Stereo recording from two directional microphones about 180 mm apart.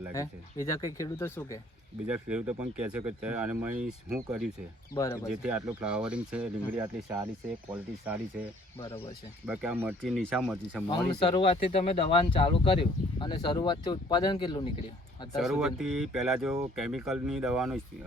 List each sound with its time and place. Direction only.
0.1 s speech: 15° left (ahead or behind)
2.0 s speech: 5° right (ahead or behind)
4.9 s speech: 15° left (ahead or behind)
5.3 s speech: 5° right (ahead or behind)
9.5 s speech: 5° right (ahead or behind)
10.0 s speech: 5° left (ahead or behind)
10.8 s speech: 25° left (ahead or behind)
15.4 s speech: centre (ahead or behind)